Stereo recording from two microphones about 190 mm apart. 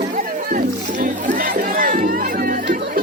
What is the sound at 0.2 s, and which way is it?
Rowboat, 45° right (ahead or behind).